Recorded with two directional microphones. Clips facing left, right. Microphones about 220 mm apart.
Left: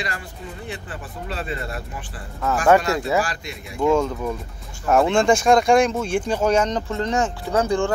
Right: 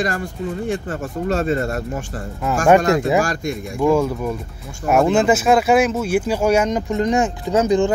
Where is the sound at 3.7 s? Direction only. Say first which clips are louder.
Right 2 dB; 10° right (ahead or behind).